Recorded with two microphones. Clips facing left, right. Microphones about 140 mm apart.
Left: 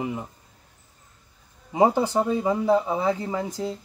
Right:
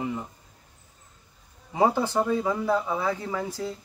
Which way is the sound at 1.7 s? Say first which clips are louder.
Left 3 dB; 15° left (ahead or behind).